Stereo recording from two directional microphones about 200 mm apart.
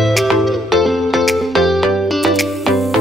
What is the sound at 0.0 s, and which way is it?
Music, centre (ahead or behind).